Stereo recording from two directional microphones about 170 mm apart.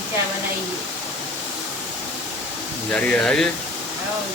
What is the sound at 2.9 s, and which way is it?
Speech, 5° left (ahead or behind).